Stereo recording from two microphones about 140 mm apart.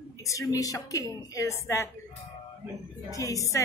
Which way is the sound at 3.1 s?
25° left (ahead or behind).